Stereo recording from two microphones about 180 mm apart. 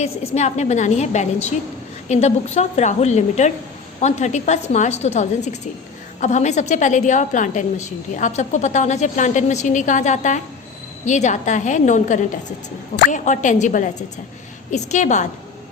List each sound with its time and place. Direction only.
0.0 s a woman's voice: 40° left (ahead or behind)